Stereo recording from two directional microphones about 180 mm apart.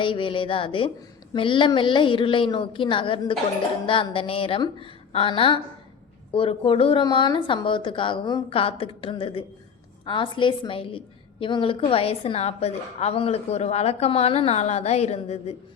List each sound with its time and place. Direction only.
0.0 s a woman's voice: 30° left (ahead or behind)